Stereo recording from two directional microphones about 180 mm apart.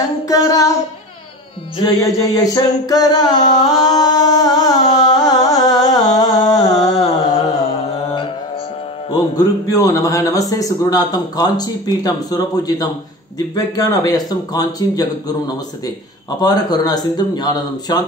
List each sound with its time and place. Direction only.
0.0 s speech: 20° left (ahead or behind)
1.8 s speech: 20° left (ahead or behind)
3.3 s carnatic music: 40° left (ahead or behind)
3.6 s speech: 20° left (ahead or behind)
4.9 s music: 20° left (ahead or behind)
9.4 s speech: 20° left (ahead or behind)